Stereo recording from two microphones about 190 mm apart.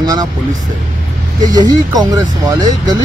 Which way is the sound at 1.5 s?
20° right (ahead or behind).